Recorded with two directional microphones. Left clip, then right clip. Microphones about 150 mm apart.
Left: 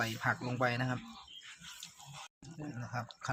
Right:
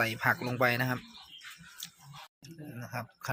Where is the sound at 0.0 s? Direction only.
15° right (ahead or behind).